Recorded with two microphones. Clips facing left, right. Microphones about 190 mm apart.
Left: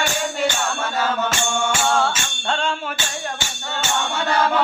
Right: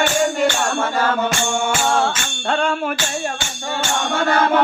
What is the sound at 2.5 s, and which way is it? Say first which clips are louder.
Music: right 4 dB; 55° right (ahead or behind).